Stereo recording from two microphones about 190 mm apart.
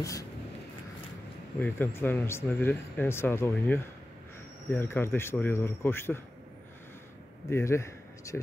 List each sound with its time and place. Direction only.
0.0 s a sound: 15° left (ahead or behind)
1.6 s speech: 10° left (ahead or behind)
7.4 s speech: 15° left (ahead or behind)